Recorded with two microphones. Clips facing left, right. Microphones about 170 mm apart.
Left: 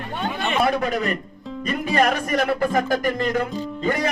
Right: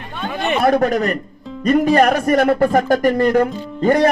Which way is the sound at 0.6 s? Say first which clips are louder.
Right 7 dB; 45° right (ahead or behind).